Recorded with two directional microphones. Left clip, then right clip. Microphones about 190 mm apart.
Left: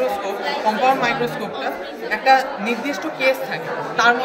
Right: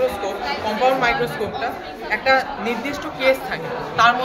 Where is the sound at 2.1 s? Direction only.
50° right (ahead or behind).